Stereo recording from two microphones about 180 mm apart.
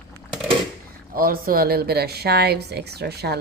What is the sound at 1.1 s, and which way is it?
Speech, 55° right (ahead or behind).